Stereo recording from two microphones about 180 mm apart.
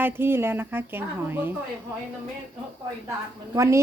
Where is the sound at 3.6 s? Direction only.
15° right (ahead or behind).